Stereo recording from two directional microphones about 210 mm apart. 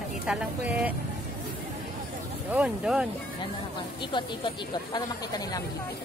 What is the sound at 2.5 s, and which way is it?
Speech, 5° right (ahead or behind).